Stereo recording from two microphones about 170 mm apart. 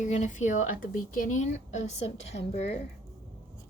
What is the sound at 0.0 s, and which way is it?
Speech, 45° left (ahead or behind).